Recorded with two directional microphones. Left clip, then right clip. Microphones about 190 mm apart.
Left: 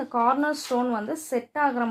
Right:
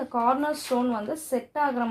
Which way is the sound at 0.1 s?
40° left (ahead or behind).